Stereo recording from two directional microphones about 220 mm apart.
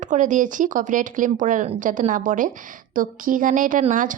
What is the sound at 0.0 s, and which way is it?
A woman's voice, 35° right (ahead or behind).